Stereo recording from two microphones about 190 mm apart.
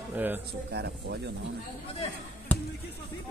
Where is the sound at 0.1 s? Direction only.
10° right (ahead or behind).